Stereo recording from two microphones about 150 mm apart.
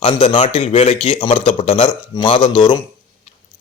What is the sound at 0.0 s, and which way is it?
A man's voice, 35° left (ahead or behind).